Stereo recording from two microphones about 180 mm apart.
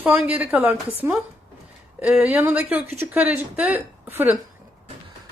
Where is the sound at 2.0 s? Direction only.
5° right (ahead or behind).